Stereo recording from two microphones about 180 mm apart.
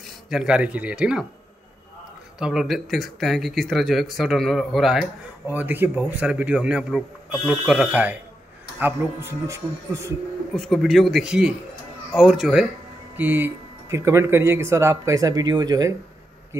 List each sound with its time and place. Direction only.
0.3 s speech: 5° right (ahead or behind)
2.3 s a man's voice: centre (ahead or behind)
10.5 s a man's voice: centre (ahead or behind); by 15.9 s 20° right (ahead or behind)